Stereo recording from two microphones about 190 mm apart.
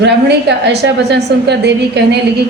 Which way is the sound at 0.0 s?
65° right (ahead or behind).